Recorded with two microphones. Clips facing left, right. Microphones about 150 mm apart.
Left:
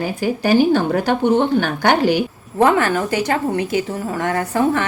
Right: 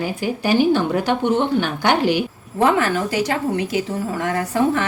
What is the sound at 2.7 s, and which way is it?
A woman's voice, 55° left (ahead or behind).